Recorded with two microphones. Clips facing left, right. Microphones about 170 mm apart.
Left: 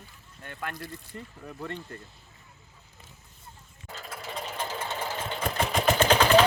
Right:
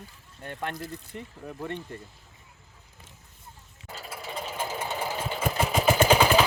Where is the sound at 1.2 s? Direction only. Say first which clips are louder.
Right 2 dB; 20° right (ahead or behind).